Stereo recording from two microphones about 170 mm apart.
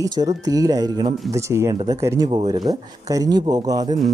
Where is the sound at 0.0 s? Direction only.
20° right (ahead or behind).